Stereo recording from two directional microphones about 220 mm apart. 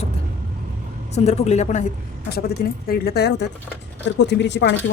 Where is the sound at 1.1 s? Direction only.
30° left (ahead or behind).